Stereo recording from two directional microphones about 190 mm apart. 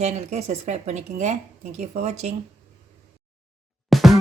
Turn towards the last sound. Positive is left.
turn(degrees=0)  # may be behind; listen again after turning